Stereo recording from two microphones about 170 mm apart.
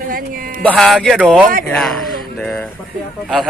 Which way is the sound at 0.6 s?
5° left (ahead or behind).